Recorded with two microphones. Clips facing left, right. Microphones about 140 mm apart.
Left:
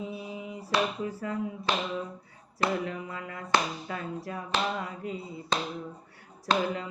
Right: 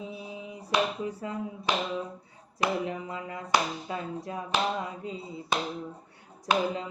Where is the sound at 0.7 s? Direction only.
20° right (ahead or behind).